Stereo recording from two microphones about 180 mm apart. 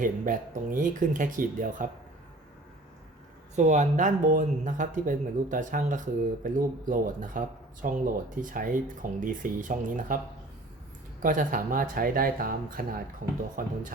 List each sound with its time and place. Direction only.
0.0 s speech: 50° right (ahead or behind)
3.5 s speech: 40° right (ahead or behind)
11.2 s speech: 45° right (ahead or behind)